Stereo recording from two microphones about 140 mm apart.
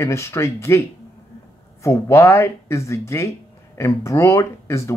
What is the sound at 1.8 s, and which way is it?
Speech, 20° left (ahead or behind).